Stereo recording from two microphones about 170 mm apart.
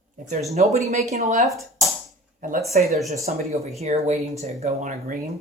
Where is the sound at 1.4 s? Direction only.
Centre (ahead or behind).